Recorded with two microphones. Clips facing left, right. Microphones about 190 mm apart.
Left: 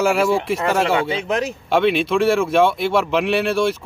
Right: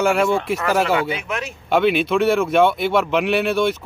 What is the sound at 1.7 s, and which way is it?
Speech, centre (ahead or behind).